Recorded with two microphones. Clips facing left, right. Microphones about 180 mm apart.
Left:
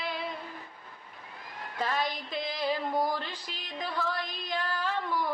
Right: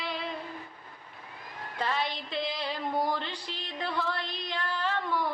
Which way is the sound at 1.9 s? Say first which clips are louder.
Even; 45° left (ahead or behind).